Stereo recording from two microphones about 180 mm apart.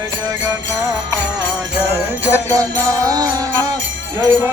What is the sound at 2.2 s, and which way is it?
Music, 15° right (ahead or behind).